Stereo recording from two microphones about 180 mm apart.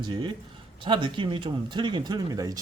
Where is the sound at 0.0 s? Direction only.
25° right (ahead or behind).